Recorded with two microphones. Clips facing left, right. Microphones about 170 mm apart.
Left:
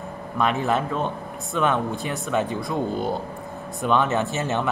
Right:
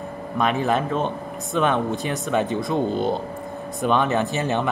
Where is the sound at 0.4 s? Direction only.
15° right (ahead or behind).